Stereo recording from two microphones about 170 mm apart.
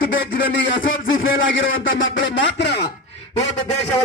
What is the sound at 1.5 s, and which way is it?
A man's voice, 90° left.